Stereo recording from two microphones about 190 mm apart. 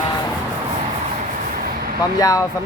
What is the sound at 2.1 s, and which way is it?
Speech, 20° left (ahead or behind).